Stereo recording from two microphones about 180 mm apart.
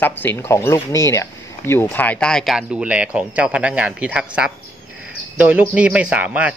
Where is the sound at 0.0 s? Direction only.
10° left (ahead or behind); by 4.3 s 5° right (ahead or behind).